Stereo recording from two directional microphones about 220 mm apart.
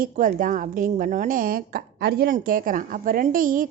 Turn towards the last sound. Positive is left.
turn(degrees=-40)  # may be behind; listen again after turning